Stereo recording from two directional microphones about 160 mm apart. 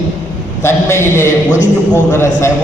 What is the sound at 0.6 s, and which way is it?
A man's voice, 15° left (ahead or behind).